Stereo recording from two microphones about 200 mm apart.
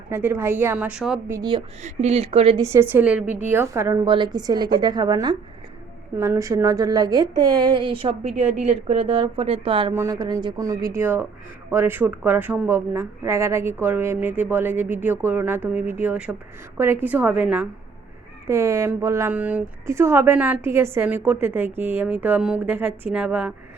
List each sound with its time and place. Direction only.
0.1 s a woman's voice: 10° right (ahead or behind)
1.4 s a woman's voice: 25° right (ahead or behind)
2.6 s a woman's voice: 15° right (ahead or behind)
9.9 s a woman's voice: 15° right (ahead or behind)